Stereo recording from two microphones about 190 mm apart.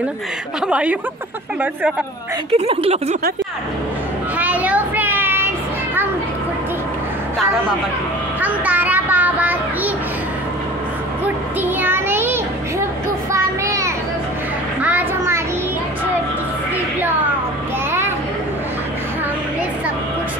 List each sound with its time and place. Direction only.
0.7 s a woman's voice: 5° right (ahead or behind)
2.5 s speech: 30° right (ahead or behind)
4.4 s child singing: 10° right (ahead or behind)
8.4 s children playing: 10° right (ahead or behind)
11.2 s a sound: 10° right (ahead or behind)
14.8 s children playing: 10° right (ahead or behind)